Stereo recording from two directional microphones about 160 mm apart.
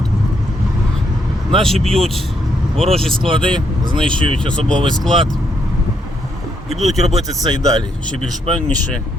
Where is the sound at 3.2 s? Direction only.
30° right (ahead or behind).